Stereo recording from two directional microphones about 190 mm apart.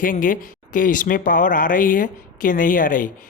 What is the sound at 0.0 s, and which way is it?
A man's voice, 45° left (ahead or behind).